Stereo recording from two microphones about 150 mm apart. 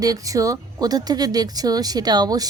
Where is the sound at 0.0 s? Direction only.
25° right (ahead or behind).